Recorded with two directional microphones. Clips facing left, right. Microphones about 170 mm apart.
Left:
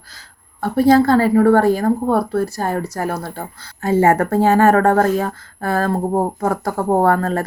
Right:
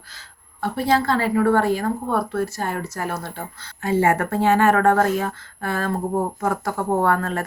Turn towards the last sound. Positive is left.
turn(degrees=35)  # may be behind; listen again after turning